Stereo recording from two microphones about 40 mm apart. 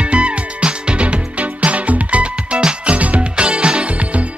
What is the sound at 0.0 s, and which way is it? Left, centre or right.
Music, right.